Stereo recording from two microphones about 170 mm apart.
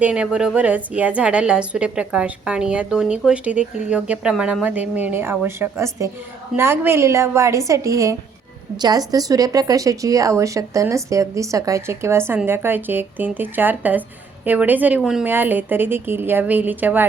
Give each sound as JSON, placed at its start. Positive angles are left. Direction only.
{"t": 0.0, "sound": "a woman's voice", "side_deg": -5}